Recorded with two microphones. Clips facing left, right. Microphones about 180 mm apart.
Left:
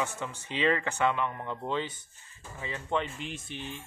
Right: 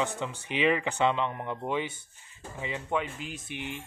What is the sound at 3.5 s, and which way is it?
Speech, 15° right (ahead or behind).